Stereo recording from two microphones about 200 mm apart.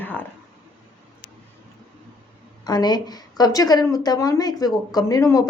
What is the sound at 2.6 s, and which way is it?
A woman's voice, 20° left (ahead or behind).